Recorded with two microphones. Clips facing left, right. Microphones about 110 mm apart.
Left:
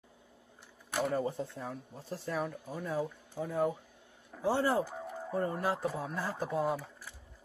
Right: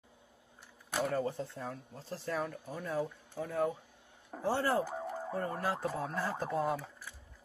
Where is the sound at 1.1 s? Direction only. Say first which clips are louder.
Left 1 dB; 15° left (ahead or behind).